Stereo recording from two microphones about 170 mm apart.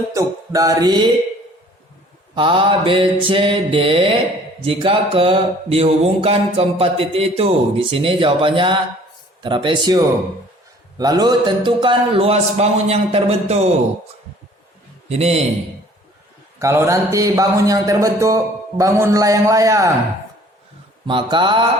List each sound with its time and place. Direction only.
0.1 s a man's voice: 20° right (ahead or behind)
2.3 s a man's voice: 30° right (ahead or behind)
15.1 s speech: 35° right (ahead or behind)
16.6 s a man's voice: 15° right (ahead or behind)
21.1 s a man's voice: 30° right (ahead or behind)